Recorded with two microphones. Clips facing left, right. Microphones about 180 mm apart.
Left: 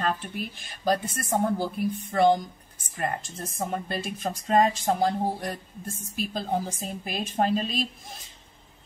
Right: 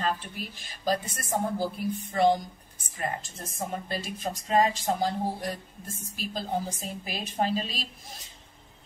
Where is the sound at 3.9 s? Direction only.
50° left (ahead or behind).